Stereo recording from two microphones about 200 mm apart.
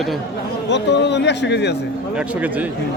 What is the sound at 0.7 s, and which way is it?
Speech, 60° left (ahead or behind).